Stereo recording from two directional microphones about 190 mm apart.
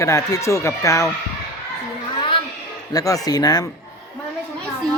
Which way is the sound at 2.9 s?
20° left (ahead or behind).